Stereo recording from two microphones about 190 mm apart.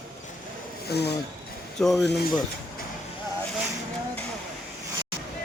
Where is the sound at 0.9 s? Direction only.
60° left (ahead or behind).